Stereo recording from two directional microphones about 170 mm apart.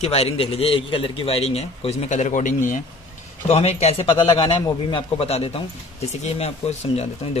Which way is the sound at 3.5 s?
40° left (ahead or behind).